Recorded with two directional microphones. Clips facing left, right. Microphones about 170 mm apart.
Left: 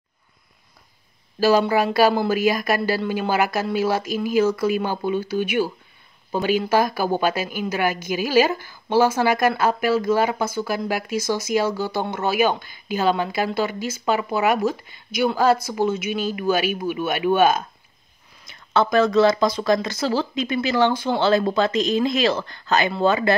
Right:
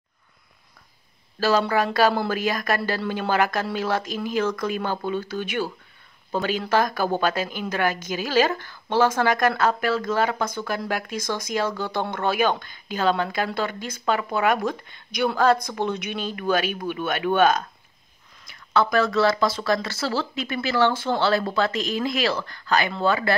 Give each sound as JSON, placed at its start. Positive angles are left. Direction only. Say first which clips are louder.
{"t": 1.6, "sound": "a woman's voice", "louder": "left 3 dB", "side_deg": 5}
{"t": 18.4, "sound": "speech", "louder": "left 2 dB", "side_deg": 25}